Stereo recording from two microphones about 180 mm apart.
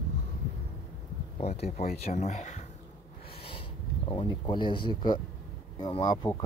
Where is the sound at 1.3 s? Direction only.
35° left (ahead or behind).